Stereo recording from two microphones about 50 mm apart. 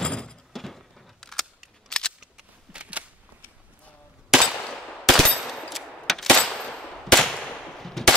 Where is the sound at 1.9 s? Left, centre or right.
Centre.